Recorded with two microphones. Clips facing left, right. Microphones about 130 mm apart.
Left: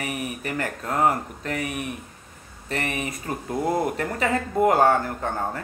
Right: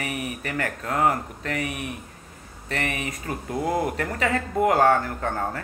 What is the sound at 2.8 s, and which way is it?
Speech, 30° left (ahead or behind).